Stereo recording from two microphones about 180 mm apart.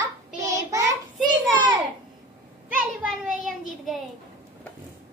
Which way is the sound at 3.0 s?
Centre (ahead or behind).